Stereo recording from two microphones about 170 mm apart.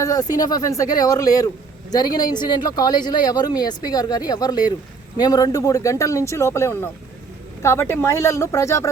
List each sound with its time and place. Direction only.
0.0 s speech: 20° left (ahead or behind)